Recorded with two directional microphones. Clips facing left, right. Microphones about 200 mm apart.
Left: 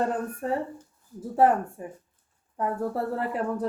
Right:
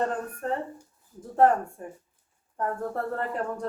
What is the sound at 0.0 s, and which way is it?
Speech, 10° left (ahead or behind).